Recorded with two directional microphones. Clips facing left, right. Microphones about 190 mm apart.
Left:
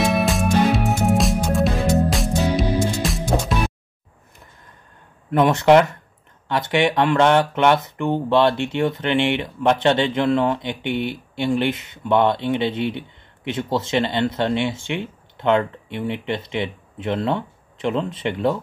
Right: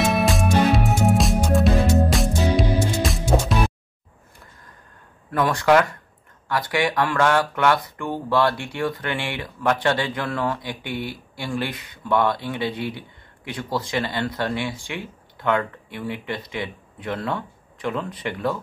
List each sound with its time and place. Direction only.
0.0 s music: centre (ahead or behind)
5.3 s speech: 25° left (ahead or behind)